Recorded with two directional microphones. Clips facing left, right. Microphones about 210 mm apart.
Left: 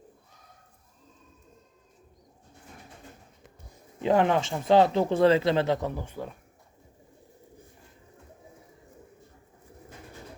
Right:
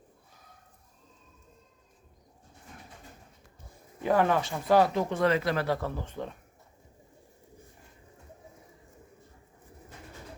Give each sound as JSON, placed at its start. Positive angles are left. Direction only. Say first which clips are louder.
{"t": 4.0, "sound": "speech", "louder": "left 2 dB", "side_deg": 20}